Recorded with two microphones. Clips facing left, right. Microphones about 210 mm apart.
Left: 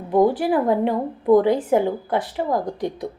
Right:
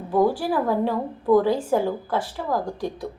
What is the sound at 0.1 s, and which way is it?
A woman's voice, 20° left (ahead or behind).